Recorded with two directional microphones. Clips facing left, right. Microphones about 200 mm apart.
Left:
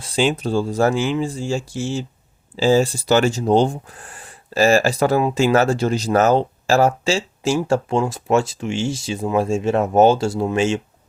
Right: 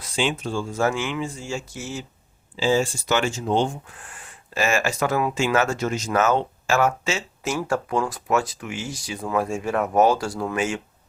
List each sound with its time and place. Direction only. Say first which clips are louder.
0.0 s speech: left 6 dB; 35° left (ahead or behind)